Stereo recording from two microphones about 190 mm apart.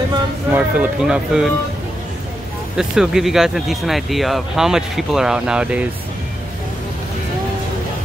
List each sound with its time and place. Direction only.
0.5 s speech: 10° right (ahead or behind)
2.8 s speech: centre (ahead or behind)